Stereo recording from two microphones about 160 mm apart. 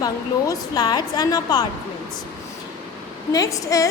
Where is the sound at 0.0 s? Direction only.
20° left (ahead or behind).